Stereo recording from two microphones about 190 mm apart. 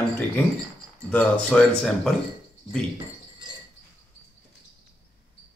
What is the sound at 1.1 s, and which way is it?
Speech, 5° left (ahead or behind).